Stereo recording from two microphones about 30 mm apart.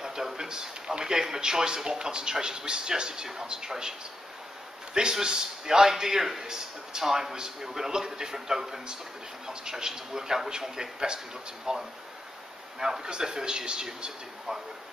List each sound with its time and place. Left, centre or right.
0.0 s a man's voice: centre
4.9 s a man's voice: right